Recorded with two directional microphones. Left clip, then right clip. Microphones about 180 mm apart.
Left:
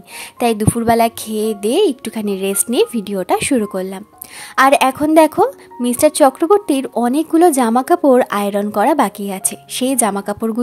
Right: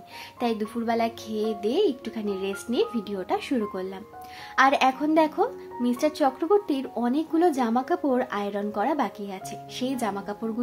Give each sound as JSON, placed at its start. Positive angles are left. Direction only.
{"t": 0.4, "sound": "speech", "side_deg": 55}